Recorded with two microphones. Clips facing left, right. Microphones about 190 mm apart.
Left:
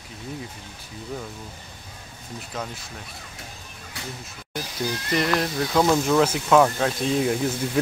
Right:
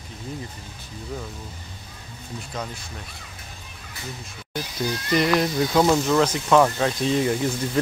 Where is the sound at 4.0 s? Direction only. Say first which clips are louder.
Left 1 dB; 80° left.